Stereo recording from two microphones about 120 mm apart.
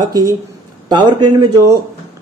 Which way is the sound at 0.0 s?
35° right (ahead or behind).